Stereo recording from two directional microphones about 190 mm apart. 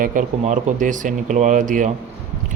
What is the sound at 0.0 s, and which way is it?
A man's voice, 45° right (ahead or behind).